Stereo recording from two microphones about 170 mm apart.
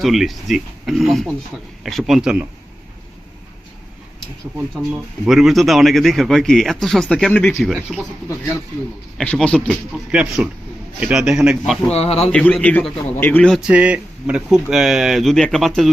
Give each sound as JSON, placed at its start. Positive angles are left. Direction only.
{"t": 0.0, "sound": "speech", "side_deg": 0}
{"t": 4.9, "sound": "speech", "side_deg": -5}
{"t": 9.1, "sound": "a man's voice", "side_deg": 5}
{"t": 10.1, "sound": "speech", "side_deg": -5}
{"t": 11.9, "sound": "speech", "side_deg": 35}
{"t": 12.3, "sound": "a man's voice", "side_deg": 5}
{"t": 13.7, "sound": "speech", "side_deg": -10}